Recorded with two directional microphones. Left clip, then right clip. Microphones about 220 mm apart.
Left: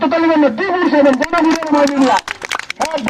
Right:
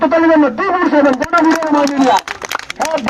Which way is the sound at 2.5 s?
50° right (ahead or behind).